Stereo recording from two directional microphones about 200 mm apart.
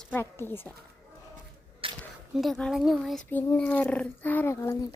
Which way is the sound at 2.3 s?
Centre (ahead or behind).